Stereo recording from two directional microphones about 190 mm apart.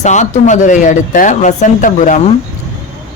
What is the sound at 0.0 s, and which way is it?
Speech, 40° left (ahead or behind).